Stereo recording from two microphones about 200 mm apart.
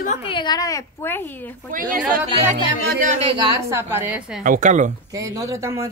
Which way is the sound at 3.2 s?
20° right (ahead or behind).